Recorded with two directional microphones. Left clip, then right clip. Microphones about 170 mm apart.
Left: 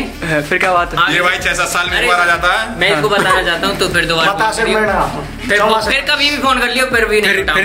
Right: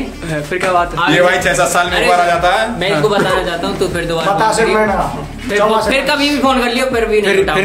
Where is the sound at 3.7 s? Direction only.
35° right (ahead or behind).